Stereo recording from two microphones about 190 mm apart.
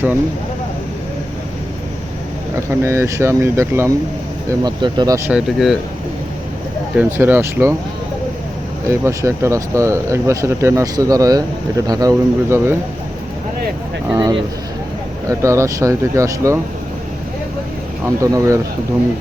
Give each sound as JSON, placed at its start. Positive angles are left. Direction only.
{"t": 2.6, "sound": "speech", "side_deg": -15}
{"t": 5.3, "sound": "speech", "side_deg": 0}
{"t": 7.0, "sound": "speech", "side_deg": -10}
{"t": 8.9, "sound": "speech", "side_deg": -15}
{"t": 14.1, "sound": "speech", "side_deg": -20}
{"t": 18.0, "sound": "speech", "side_deg": -15}